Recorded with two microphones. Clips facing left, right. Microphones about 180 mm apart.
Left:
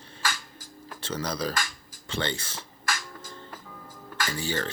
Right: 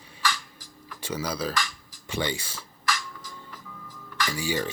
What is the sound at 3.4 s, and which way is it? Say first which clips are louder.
Music: left 1 dB; 45° left (ahead or behind).